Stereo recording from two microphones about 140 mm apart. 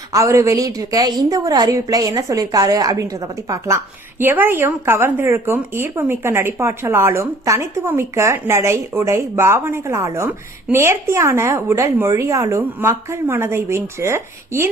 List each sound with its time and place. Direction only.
0.1 s speech: 20° right (ahead or behind)